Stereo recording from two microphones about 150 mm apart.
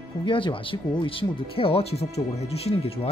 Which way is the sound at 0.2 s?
35° left (ahead or behind).